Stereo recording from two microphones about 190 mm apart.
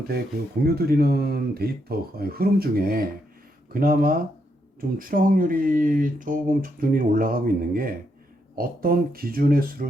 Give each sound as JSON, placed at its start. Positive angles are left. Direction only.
{"t": 0.6, "sound": "speech", "side_deg": -55}